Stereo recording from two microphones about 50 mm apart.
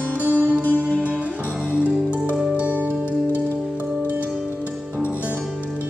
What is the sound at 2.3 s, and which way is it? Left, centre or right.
Music, right.